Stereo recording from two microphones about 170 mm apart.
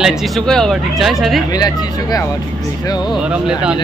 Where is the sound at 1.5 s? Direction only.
20° left (ahead or behind).